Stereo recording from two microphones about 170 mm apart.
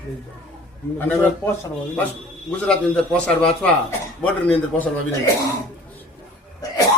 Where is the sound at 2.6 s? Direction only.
5° left (ahead or behind).